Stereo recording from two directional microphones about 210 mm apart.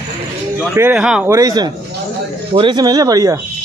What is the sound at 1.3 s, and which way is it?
Speech, 20° right (ahead or behind).